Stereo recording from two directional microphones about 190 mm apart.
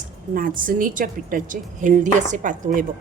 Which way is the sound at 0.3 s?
45° right (ahead or behind).